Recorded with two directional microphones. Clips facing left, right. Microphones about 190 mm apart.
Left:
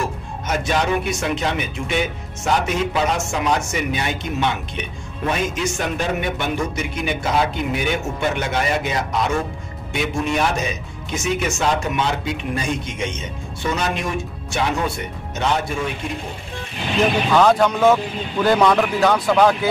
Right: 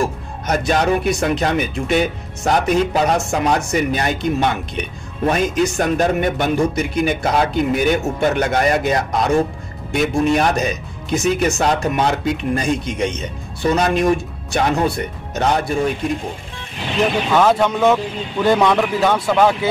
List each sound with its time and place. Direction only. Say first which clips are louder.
0.5 s speech: right 4 dB; 35° right (ahead or behind)
17.3 s a man's voice: even; centre (ahead or behind)